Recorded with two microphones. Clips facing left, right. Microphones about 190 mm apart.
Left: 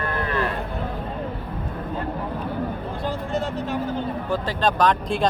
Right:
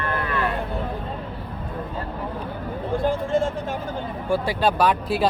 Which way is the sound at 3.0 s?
50° right (ahead or behind).